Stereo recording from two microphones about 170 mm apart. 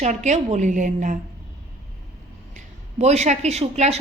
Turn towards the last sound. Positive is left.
turn(degrees=-40)  # may be behind; listen again after turning